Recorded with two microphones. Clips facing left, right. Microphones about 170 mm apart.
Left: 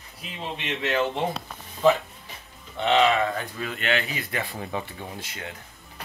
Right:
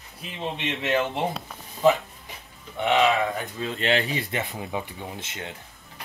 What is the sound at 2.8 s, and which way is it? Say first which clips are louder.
Speech: even; 10° right (ahead or behind).